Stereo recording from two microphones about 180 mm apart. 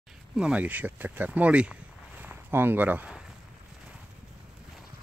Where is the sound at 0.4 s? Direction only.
5° right (ahead or behind).